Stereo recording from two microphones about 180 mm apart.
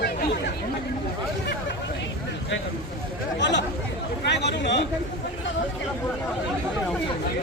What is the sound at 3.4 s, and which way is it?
A man's voice, 75° left (ahead or behind).